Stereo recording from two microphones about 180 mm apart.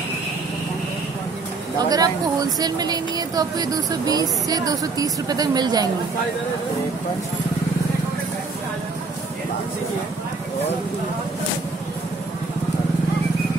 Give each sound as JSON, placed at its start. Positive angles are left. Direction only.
{"t": 1.8, "sound": "speech", "side_deg": -20}